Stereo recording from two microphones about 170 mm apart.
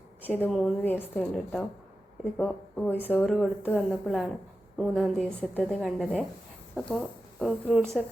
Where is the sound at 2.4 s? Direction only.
10° left (ahead or behind).